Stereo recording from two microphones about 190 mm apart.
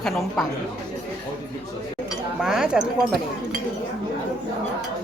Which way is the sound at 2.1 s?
5° right (ahead or behind).